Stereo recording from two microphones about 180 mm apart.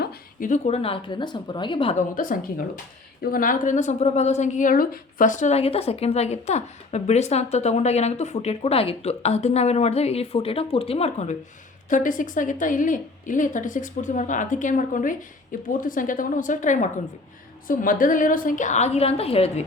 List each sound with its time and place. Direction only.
0.0 s a woman's voice: 45° left (ahead or behind); by 2.0 s 30° left (ahead or behind)
2.0 s a woman's voice: 50° left (ahead or behind)
11.9 s a woman's voice: 45° left (ahead or behind)